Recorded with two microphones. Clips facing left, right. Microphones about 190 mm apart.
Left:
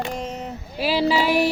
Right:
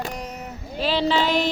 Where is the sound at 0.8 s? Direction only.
10° left (ahead or behind).